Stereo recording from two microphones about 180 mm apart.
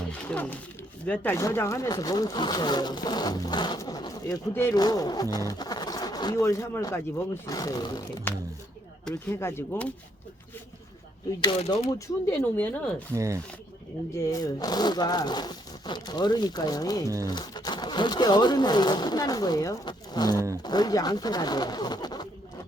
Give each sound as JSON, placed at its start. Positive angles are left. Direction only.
{"t": 0.1, "sound": "speech", "side_deg": 5}
{"t": 9.0, "sound": "speech", "side_deg": 15}
{"t": 11.4, "sound": "speech", "side_deg": 30}
{"t": 11.8, "sound": "speech", "side_deg": 15}
{"t": 13.1, "sound": "speech", "side_deg": -15}
{"t": 14.3, "sound": "speech", "side_deg": 20}